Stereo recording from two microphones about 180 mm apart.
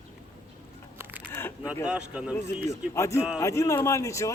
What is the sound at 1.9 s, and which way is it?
Speech, 5° right (ahead or behind).